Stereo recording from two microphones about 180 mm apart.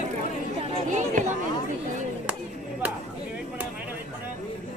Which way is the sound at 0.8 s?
45° right (ahead or behind).